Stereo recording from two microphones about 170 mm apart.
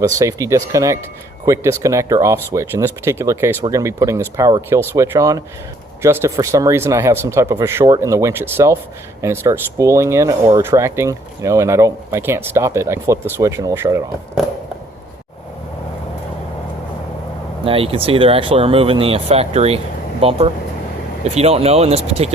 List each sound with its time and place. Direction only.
0.0 s speech: 20° right (ahead or behind)
17.7 s speech: 35° right (ahead or behind)